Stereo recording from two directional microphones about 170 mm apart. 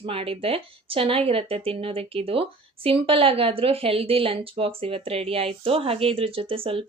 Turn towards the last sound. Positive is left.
turn(degrees=-35)  # may be behind; listen again after turning